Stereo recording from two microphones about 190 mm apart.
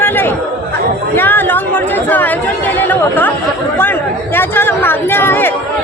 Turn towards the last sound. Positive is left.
turn(degrees=10)  # may be behind; listen again after turning